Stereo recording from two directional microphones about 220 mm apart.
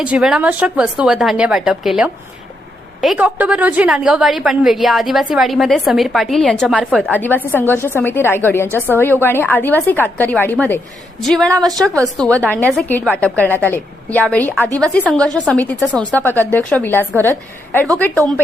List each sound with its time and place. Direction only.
0.0 s a woman's voice: 5° right (ahead or behind)
11.5 s a woman's voice: 15° right (ahead or behind)
12.1 s a woman's voice: 5° left (ahead or behind)